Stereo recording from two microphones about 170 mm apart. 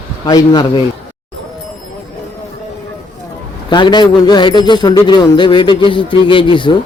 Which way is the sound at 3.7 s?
25° left (ahead or behind).